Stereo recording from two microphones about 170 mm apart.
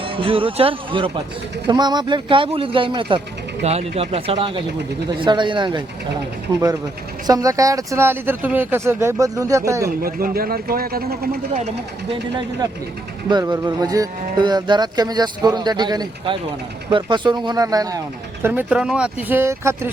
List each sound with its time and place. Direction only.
0.0 s speech: 30° right (ahead or behind)
7.3 s speech: 20° right (ahead or behind)
10.0 s speech: 55° right (ahead or behind)
12.1 s speech: 25° right (ahead or behind)
18.4 s speech: 10° right (ahead or behind)